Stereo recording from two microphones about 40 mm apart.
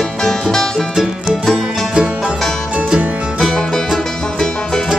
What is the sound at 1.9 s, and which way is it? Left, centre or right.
Music, right.